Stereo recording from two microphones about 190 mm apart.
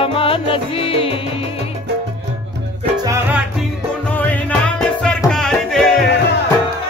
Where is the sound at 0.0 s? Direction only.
30° left (ahead or behind).